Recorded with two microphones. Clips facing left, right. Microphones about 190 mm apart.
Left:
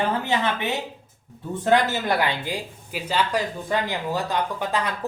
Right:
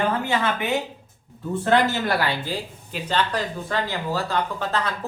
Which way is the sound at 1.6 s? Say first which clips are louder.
Even; 20° left (ahead or behind).